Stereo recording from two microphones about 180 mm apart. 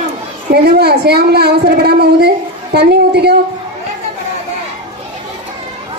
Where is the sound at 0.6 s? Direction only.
65° right (ahead or behind).